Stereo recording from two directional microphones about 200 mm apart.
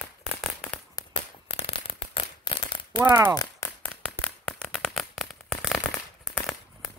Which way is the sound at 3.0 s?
10° right (ahead or behind).